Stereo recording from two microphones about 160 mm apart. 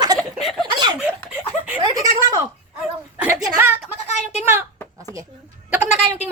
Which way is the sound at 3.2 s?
5° right (ahead or behind).